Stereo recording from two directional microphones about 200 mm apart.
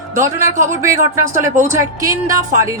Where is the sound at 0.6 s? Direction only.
15° right (ahead or behind).